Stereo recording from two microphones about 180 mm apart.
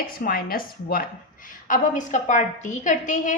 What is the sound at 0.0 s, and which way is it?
Speech, 50° left (ahead or behind).